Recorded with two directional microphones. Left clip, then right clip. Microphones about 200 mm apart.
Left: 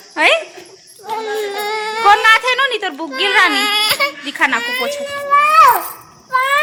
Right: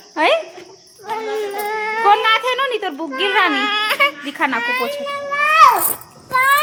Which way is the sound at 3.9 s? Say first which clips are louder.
Even; centre (ahead or behind).